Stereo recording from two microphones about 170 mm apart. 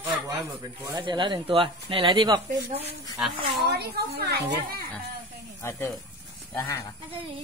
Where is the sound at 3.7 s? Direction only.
70° right (ahead or behind).